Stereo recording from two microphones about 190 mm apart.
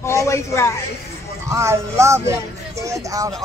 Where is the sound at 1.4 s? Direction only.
15° right (ahead or behind).